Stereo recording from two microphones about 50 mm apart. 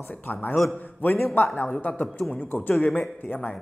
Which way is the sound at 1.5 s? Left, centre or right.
Left.